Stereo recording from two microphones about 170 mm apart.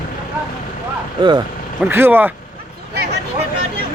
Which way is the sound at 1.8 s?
10° right (ahead or behind).